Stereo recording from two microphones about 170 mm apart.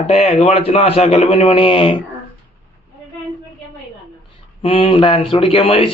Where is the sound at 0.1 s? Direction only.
35° left (ahead or behind).